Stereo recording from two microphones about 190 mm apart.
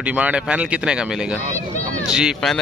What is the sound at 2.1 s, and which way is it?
Speech, 5° right (ahead or behind).